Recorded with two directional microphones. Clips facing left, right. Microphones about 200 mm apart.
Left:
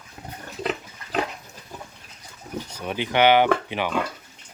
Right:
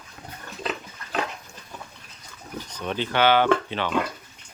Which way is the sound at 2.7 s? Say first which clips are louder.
Left 1 dB; 10° left (ahead or behind).